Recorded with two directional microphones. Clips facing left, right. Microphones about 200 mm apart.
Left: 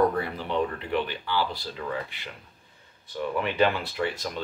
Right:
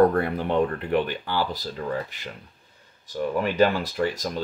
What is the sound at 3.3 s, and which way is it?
Speech, 40° right (ahead or behind).